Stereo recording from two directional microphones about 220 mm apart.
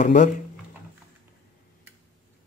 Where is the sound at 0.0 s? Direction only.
35° left (ahead or behind).